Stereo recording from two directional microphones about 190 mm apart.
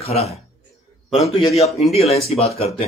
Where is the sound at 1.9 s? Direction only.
30° left (ahead or behind).